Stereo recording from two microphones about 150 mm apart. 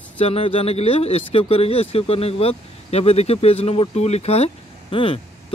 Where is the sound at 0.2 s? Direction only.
40° left (ahead or behind).